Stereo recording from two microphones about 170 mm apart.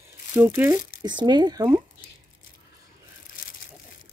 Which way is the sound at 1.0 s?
25° right (ahead or behind).